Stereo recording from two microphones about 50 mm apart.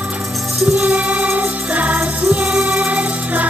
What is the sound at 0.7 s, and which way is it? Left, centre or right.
Music, right.